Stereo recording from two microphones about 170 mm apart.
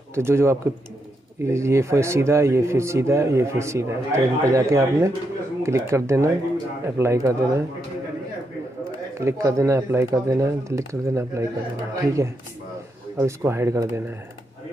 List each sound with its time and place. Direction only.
0.1 s speech: 15° right (ahead or behind)
9.2 s speech: 15° right (ahead or behind)